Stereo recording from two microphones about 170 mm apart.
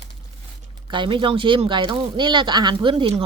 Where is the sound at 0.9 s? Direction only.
30° right (ahead or behind).